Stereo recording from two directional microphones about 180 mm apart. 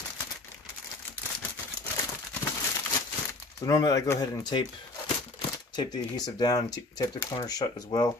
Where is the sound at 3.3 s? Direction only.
20° left (ahead or behind).